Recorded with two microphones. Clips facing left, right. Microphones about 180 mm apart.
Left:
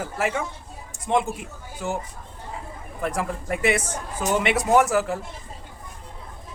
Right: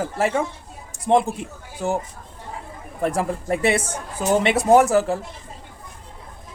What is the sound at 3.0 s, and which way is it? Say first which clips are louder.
Speech: right 5 dB; 30° right (ahead or behind).